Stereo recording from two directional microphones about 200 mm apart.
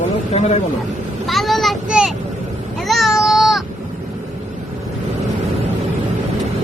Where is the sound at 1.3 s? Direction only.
Centre (ahead or behind).